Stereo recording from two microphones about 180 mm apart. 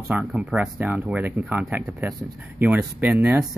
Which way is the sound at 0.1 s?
5° right (ahead or behind).